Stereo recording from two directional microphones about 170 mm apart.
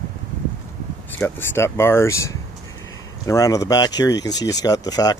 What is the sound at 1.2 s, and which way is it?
Speech, 15° left (ahead or behind).